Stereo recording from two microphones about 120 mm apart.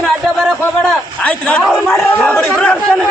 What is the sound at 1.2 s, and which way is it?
Speech, 10° left (ahead or behind).